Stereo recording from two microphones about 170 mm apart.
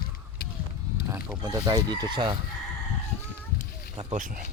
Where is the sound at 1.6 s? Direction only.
25° right (ahead or behind).